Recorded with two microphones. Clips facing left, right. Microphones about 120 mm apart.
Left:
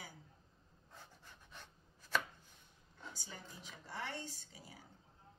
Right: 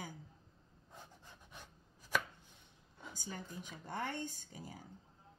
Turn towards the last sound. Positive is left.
turn(degrees=-45)  # may be behind; listen again after turning